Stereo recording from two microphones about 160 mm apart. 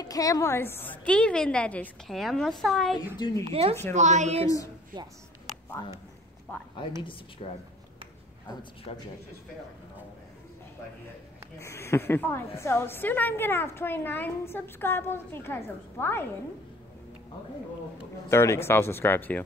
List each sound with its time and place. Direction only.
0.0 s a woman's voice: 20° left (ahead or behind); by 3.0 s centre (ahead or behind)
3.2 s a woman's voice: 25° left (ahead or behind)
3.4 s a woman's voice: 40° right (ahead or behind)
4.9 s speech: 25° right (ahead or behind)
7.4 s speech: 40° left (ahead or behind)
8.9 s speech: 35° left (ahead or behind)
11.6 s a woman's voice: 15° left (ahead or behind)
18.3 s a woman's voice: 15° left (ahead or behind)